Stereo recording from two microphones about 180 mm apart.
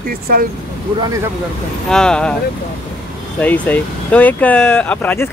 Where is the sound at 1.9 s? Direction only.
5° left (ahead or behind).